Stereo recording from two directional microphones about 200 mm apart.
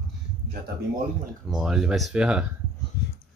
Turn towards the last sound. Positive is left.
turn(degrees=50)  # may be behind; listen again after turning